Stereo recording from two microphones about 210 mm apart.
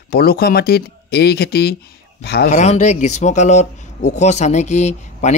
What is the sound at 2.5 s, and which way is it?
Speech, 30° left (ahead or behind).